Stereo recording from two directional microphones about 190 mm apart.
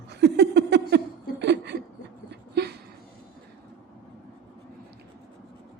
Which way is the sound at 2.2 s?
60° right (ahead or behind).